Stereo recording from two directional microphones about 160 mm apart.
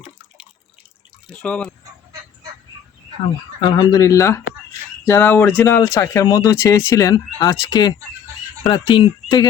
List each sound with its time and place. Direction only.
1.4 s speech: 10° left (ahead or behind)
3.6 s speech: 25° left (ahead or behind)